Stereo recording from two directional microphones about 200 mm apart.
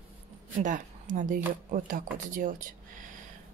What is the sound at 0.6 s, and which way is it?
Speech, 40° right (ahead or behind).